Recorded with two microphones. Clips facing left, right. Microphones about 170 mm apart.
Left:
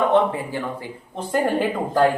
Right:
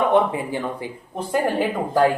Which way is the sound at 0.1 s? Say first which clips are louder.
Even; 15° right (ahead or behind).